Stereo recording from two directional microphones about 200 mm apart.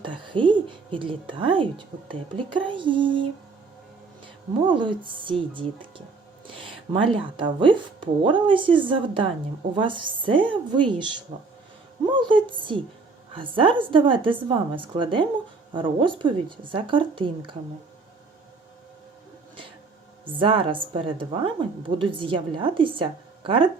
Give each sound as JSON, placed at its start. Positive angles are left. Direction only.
{"t": 0.0, "sound": "a woman's voice", "side_deg": -25}
{"t": 4.7, "sound": "a woman's voice", "side_deg": -25}
{"t": 7.0, "sound": "a woman's voice", "side_deg": -25}
{"t": 20.2, "sound": "a woman's voice", "side_deg": -25}